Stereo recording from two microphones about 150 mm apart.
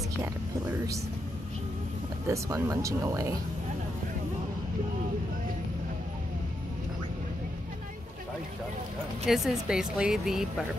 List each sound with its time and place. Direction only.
0.2 s speech: 20° right (ahead or behind)
2.2 s speech: 20° right (ahead or behind)
9.2 s speech: centre (ahead or behind)